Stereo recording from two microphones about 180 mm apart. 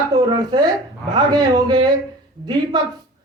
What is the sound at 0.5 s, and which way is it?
A man's voice, 25° right (ahead or behind).